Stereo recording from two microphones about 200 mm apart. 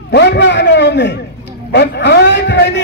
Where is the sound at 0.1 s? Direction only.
60° left (ahead or behind).